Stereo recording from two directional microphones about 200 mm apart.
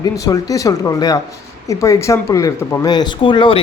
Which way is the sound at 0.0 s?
20° left (ahead or behind).